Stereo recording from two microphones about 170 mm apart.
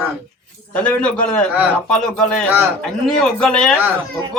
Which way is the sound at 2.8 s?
5° left (ahead or behind).